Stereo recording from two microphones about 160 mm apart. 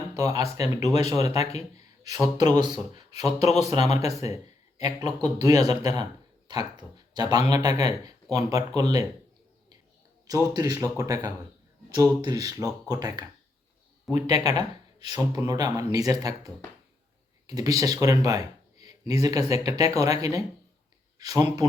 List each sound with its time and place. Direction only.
0.2 s speech: 20° right (ahead or behind)
3.2 s speech: 40° left (ahead or behind)
3.6 s speech: 25° right (ahead or behind)
10.2 s speech: 25° right (ahead or behind)
14.1 s speech: centre (ahead or behind)
14.4 s a sound: 25° right (ahead or behind)
15.1 s speech: 20° right (ahead or behind)